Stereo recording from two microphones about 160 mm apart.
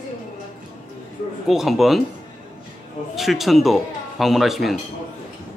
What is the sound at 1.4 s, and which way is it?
Speech, centre (ahead or behind).